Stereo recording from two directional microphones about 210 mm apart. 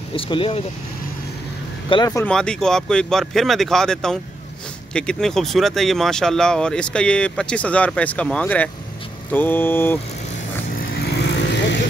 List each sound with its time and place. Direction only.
0.1 s speech: 25° left (ahead or behind)
1.9 s speech: 20° left (ahead or behind)
2.2 s speech: 5° left (ahead or behind)
9.3 s vehicle: 10° left (ahead or behind)
11.0 s vehicle: 55° left (ahead or behind)